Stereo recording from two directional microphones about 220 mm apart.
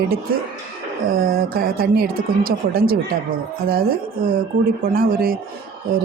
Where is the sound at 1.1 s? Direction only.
40° right (ahead or behind).